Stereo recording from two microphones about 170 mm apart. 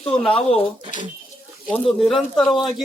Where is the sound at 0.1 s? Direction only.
5° left (ahead or behind).